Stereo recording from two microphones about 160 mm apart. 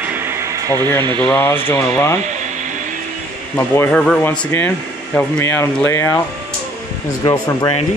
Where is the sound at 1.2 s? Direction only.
15° left (ahead or behind).